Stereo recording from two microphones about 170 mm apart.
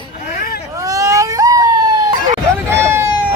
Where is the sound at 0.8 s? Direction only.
20° right (ahead or behind).